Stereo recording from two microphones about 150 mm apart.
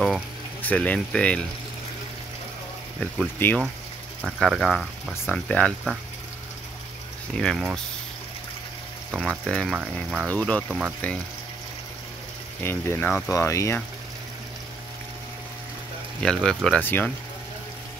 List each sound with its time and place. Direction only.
0.6 s speech: 10° left (ahead or behind)
3.0 s speech: 10° left (ahead or behind)
7.3 s speech: 5° left (ahead or behind)
9.2 s speech: 5° left (ahead or behind)
10.7 s speech: 5° right (ahead or behind)
12.6 s speech: 15° left (ahead or behind)
16.2 s speech: 5° left (ahead or behind)